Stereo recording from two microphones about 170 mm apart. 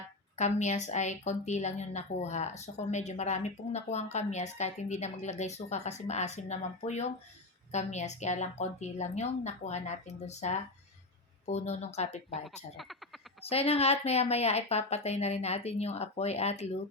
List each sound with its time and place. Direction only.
0.3 s a woman's voice: 45° left (ahead or behind)
12.5 s speech: centre (ahead or behind)
13.4 s speech: 35° left (ahead or behind)